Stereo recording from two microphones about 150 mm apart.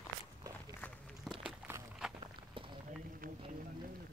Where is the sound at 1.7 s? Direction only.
15° right (ahead or behind).